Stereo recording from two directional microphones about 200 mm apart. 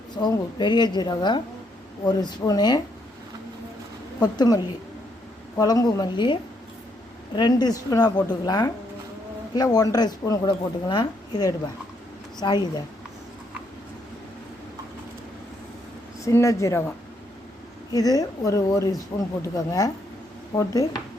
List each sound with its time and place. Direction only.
0.2 s a woman's voice: 20° left (ahead or behind)
4.2 s a woman's voice: 20° left (ahead or behind)
16.2 s speech: 15° left (ahead or behind)
17.9 s speech: 20° left (ahead or behind)